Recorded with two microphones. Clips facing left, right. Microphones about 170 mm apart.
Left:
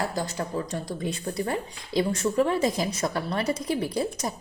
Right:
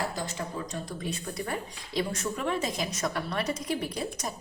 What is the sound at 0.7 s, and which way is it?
A woman's voice, 30° left (ahead or behind).